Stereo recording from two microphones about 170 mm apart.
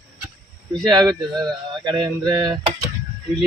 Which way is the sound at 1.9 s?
25° right (ahead or behind).